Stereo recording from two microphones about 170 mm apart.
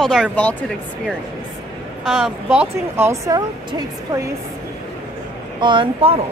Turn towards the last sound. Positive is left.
turn(degrees=-30)  # may be behind; listen again after turning